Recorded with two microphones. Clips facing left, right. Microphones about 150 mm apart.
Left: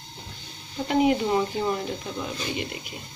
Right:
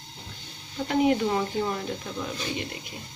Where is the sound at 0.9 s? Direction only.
10° left (ahead or behind).